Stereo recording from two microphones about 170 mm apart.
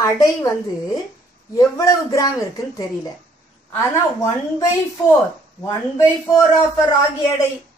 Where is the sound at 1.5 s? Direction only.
20° left (ahead or behind).